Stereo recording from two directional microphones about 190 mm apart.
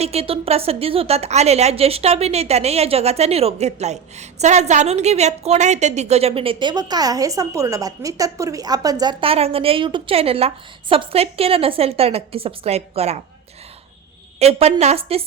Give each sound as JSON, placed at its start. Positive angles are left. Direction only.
{"t": 0.0, "sound": "a woman's voice", "side_deg": -30}
{"t": 14.3, "sound": "a woman's voice", "side_deg": -35}